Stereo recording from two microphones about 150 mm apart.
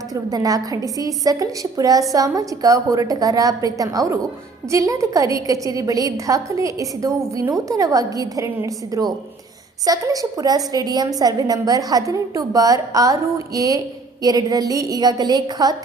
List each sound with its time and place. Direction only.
0.1 s a woman's voice: 25° right (ahead or behind)